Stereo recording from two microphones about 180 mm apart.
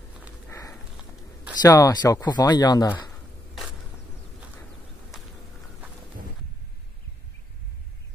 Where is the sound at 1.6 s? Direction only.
20° left (ahead or behind).